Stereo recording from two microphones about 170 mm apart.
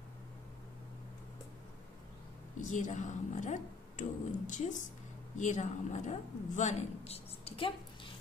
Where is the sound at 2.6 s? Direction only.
45° left (ahead or behind).